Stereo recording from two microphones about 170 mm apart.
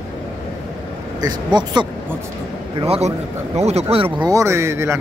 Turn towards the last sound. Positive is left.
turn(degrees=-15)  # may be behind; listen again after turning